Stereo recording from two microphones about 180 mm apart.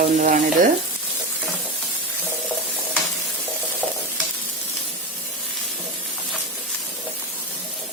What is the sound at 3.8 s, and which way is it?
Stir, 10° left (ahead or behind).